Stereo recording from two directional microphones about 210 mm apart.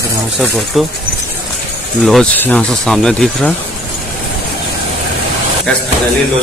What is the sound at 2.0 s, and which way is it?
Speech, centre (ahead or behind).